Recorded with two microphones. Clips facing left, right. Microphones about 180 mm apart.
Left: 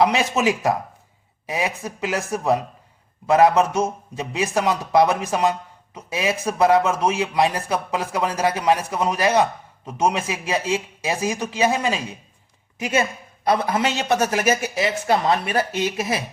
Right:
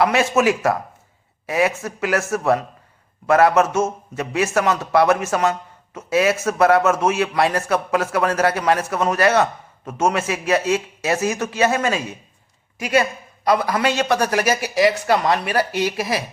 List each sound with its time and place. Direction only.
0.0 s speech: 15° left (ahead or behind)